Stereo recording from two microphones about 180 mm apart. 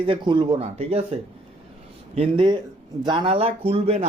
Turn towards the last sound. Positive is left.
turn(degrees=-35)  # may be behind; listen again after turning